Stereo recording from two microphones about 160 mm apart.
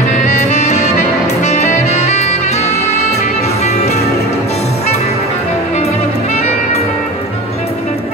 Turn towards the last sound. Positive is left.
turn(degrees=40)  # may be behind; listen again after turning